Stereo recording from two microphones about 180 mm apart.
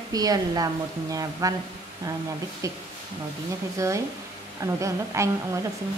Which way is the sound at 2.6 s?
20° right (ahead or behind).